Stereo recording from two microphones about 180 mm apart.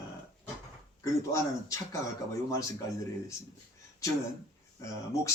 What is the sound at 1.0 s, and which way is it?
Speech, 15° left (ahead or behind).